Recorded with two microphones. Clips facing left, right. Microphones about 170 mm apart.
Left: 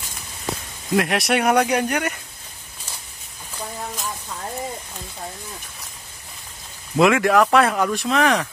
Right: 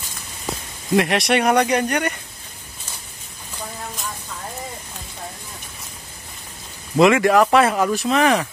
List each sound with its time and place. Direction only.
0.9 s speech: centre (ahead or behind)
7.0 s speech: centre (ahead or behind)